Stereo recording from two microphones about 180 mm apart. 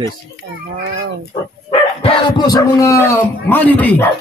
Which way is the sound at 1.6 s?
30° left (ahead or behind).